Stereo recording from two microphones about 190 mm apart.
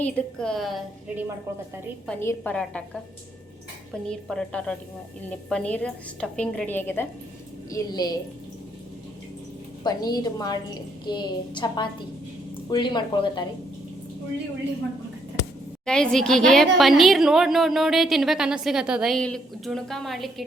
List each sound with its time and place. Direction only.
0.0 s a woman's voice: 5° left (ahead or behind)
2.0 s a woman's voice: 10° left (ahead or behind)
4.0 s a woman's voice: 5° left (ahead or behind); by 8.2 s 20° left (ahead or behind)
9.8 s a woman's voice: 20° left (ahead or behind)
15.9 s a woman's voice: 5° left (ahead or behind)